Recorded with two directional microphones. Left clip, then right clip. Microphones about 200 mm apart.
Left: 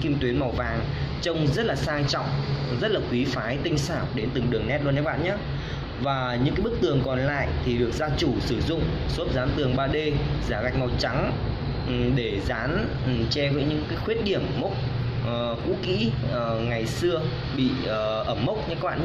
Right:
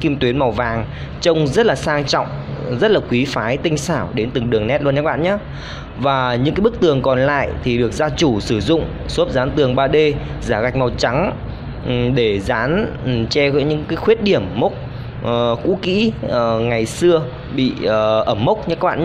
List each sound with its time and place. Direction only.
0.0 s speech: 50° right (ahead or behind)